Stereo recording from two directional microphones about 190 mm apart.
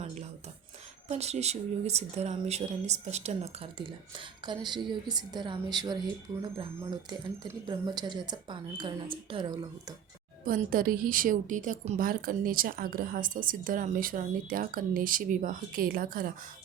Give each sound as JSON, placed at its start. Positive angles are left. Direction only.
{"t": 0.0, "sound": "rub", "side_deg": -35}
{"t": 1.0, "sound": "a woman's voice", "side_deg": -35}
{"t": 7.7, "sound": "a woman's voice", "side_deg": -25}
{"t": 10.4, "sound": "a woman's voice", "side_deg": -50}